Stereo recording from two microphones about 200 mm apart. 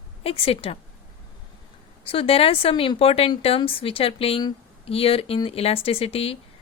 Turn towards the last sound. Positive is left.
turn(degrees=30)  # may be behind; listen again after turning